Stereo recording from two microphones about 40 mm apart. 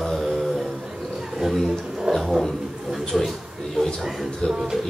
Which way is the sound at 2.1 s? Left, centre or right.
Centre.